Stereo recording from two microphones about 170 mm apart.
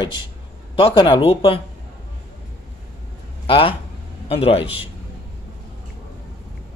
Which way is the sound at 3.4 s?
30° left (ahead or behind).